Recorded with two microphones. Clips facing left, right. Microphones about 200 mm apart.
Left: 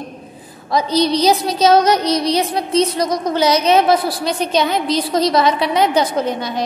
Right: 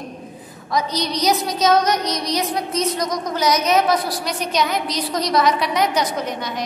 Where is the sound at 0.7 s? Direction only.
30° left (ahead or behind).